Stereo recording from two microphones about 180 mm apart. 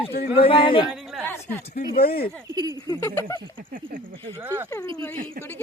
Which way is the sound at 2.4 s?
20° right (ahead or behind).